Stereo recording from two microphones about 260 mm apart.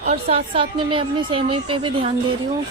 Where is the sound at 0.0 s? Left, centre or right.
Right.